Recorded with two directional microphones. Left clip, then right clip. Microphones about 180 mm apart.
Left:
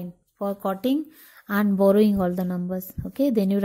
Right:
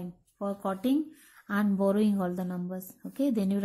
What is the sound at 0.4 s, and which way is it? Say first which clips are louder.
Speech: left 6 dB; 45° left (ahead or behind).